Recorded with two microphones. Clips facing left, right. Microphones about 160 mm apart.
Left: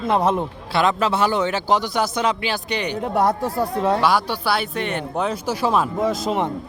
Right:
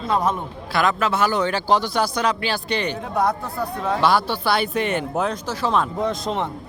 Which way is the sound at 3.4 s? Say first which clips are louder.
Left 5 dB; 30° left (ahead or behind).